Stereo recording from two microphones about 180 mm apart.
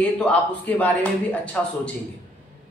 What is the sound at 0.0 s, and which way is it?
Speech, 5° left (ahead or behind).